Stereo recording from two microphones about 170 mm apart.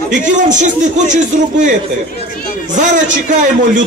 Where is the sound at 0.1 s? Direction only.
50° right (ahead or behind).